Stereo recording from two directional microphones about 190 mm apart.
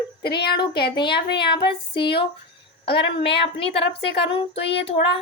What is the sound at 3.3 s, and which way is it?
Female singing, 30° left (ahead or behind).